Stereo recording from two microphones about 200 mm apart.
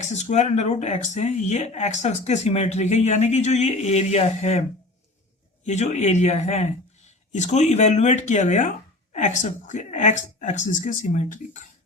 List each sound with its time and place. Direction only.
0.0 s speech: 35° left (ahead or behind)
5.6 s speech: 35° left (ahead or behind)